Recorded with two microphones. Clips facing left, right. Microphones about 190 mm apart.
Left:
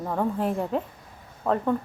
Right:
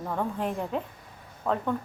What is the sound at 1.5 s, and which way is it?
Speech, 15° left (ahead or behind).